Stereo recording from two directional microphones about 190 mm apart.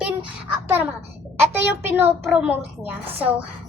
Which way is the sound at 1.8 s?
10° right (ahead or behind).